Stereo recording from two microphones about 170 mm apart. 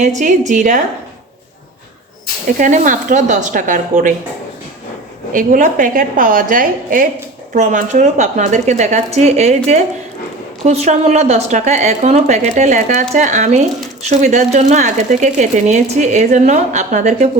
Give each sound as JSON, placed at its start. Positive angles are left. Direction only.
{"t": 0.2, "sound": "a woman's voice", "side_deg": -45}
{"t": 2.6, "sound": "a woman's voice", "side_deg": -50}
{"t": 5.3, "sound": "a woman's voice", "side_deg": -50}
{"t": 10.7, "sound": "a woman's voice", "side_deg": -40}